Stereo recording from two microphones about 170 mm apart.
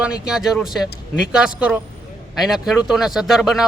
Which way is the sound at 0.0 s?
5° right (ahead or behind).